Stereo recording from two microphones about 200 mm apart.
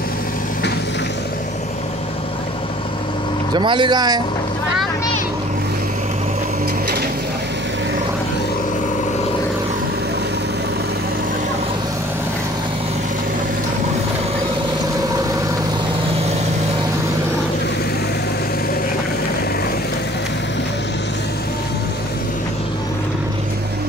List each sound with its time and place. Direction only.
3.5 s speech: 25° right (ahead or behind)